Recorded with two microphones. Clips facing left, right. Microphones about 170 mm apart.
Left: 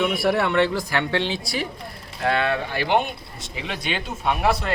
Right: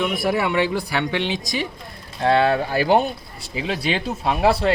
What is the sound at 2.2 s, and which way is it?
Speech, 30° right (ahead or behind).